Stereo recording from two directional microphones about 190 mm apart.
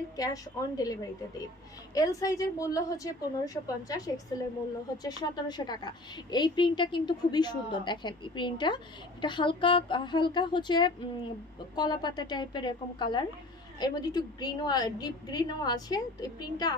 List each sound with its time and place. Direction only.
0.2 s a woman's voice: 20° left (ahead or behind)
2.0 s a woman's voice: 20° left (ahead or behind)